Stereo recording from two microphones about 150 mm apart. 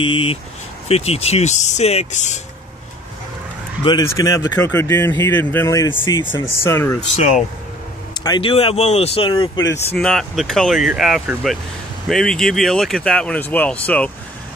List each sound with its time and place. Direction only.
0.0 s speech: 35° left (ahead or behind)
4.1 s speech: 20° left (ahead or behind)
6.0 s speech: 30° left (ahead or behind)
6.6 s speech: 15° left (ahead or behind)
7.2 s speech: 50° left (ahead or behind)
8.2 s speech: 30° left (ahead or behind)
9.9 s speech: centre (ahead or behind)